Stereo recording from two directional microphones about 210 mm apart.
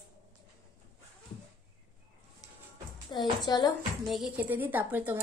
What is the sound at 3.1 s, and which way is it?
Speech, 20° left (ahead or behind).